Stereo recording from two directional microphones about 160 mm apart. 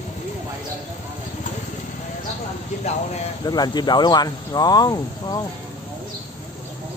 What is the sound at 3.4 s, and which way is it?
Speech, 25° left (ahead or behind).